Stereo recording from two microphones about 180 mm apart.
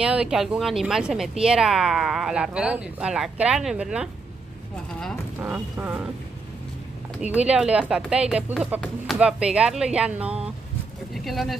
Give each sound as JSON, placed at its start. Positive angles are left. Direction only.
{"t": 0.0, "sound": "speech", "side_deg": -5}
{"t": 5.4, "sound": "speech", "side_deg": -10}
{"t": 7.2, "sound": "speech", "side_deg": -5}